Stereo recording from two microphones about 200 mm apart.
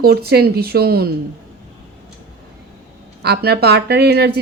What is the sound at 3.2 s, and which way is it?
A woman's voice, 55° right (ahead or behind).